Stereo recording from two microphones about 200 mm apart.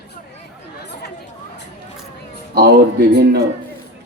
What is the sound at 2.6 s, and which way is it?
Speech, 50° right (ahead or behind).